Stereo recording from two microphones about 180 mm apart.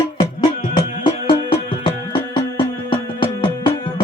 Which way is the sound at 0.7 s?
25° left (ahead or behind).